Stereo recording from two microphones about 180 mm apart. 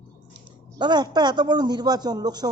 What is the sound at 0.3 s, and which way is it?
A man's voice, 25° right (ahead or behind).